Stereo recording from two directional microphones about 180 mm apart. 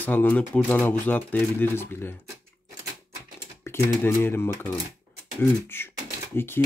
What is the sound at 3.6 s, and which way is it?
Typing, 15° left (ahead or behind).